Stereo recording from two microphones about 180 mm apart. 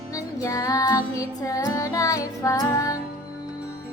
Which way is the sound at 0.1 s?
20° left (ahead or behind).